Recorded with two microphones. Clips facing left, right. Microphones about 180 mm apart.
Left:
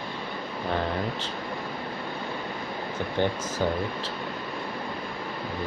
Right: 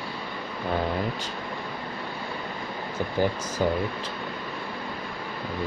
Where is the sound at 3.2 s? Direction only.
5° right (ahead or behind).